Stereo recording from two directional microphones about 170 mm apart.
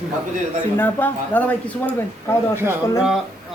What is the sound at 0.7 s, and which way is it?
Speech, 10° left (ahead or behind).